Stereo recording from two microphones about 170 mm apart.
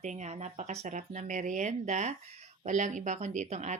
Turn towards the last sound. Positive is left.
turn(degrees=-45)  # may be behind; listen again after turning